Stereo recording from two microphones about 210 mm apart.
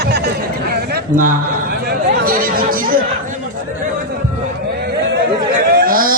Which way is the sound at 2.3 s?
45° right (ahead or behind).